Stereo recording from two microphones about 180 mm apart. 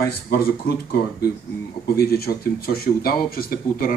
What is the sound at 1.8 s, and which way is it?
Speech, 60° left (ahead or behind).